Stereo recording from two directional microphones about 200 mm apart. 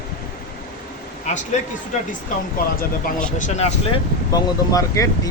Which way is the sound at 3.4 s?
35° left (ahead or behind).